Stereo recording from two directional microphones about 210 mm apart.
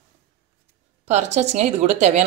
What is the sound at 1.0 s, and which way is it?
A woman's voice, 35° right (ahead or behind).